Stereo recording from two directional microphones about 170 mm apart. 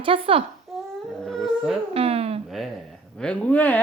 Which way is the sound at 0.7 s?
Centre (ahead or behind).